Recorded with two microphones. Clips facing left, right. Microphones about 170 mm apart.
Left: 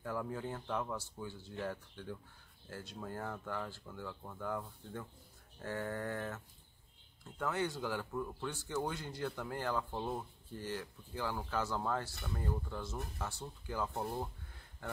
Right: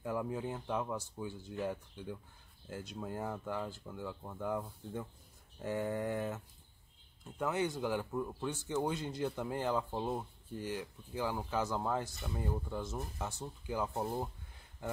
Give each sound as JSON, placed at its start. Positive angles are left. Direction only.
{"t": 0.0, "sound": "speech", "side_deg": -15}